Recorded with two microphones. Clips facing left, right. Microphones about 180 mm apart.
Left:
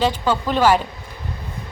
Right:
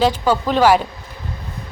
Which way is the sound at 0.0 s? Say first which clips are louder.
Right 3 dB; 10° right (ahead or behind).